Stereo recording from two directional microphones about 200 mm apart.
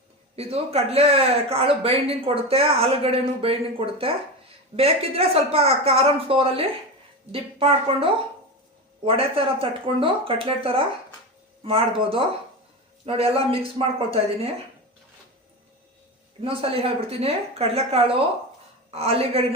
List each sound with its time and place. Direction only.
0.3 s speech: 30° right (ahead or behind)
16.4 s speech: 30° right (ahead or behind)